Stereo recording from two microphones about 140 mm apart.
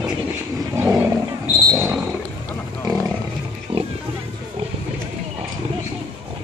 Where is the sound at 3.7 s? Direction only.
40° right (ahead or behind).